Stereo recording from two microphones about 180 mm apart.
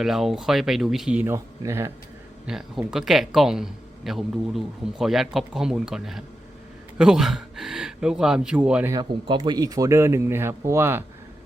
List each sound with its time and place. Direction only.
0.0 s a man's voice: centre (ahead or behind)
2.5 s a man's voice: 5° right (ahead or behind)
8.9 s speech: 25° right (ahead or behind)